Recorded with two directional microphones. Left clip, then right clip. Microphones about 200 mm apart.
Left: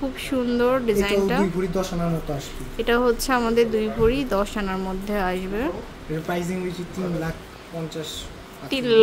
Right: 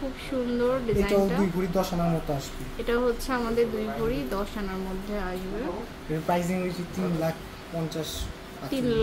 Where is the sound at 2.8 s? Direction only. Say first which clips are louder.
Left 6 dB; 30° left (ahead or behind).